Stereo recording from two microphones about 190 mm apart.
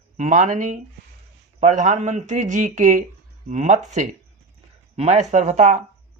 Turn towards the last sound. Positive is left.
turn(degrees=-40)  # may be behind; listen again after turning